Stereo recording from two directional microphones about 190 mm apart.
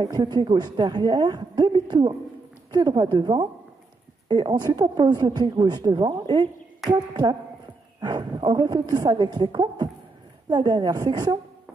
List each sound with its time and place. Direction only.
0.0 s speech: 20° right (ahead or behind)